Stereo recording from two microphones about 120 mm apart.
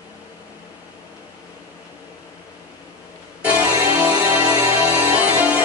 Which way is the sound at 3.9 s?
15° right (ahead or behind).